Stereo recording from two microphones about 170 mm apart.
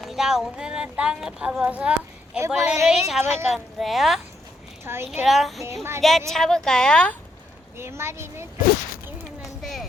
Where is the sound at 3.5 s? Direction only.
Centre (ahead or behind).